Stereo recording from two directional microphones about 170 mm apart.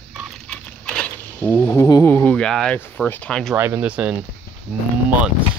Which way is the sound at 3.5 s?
15° right (ahead or behind).